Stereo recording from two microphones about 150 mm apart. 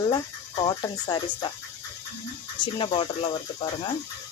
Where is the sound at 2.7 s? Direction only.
35° left (ahead or behind).